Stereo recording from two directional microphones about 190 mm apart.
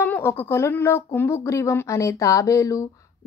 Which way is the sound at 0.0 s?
10° left (ahead or behind).